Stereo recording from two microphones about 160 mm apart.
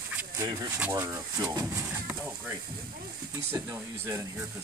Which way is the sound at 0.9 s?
20° right (ahead or behind).